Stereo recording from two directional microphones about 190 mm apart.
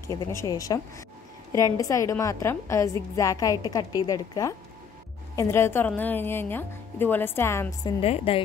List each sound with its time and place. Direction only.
0.0 s a woman's voice: 15° left (ahead or behind)
8.0 s speech: 30° left (ahead or behind)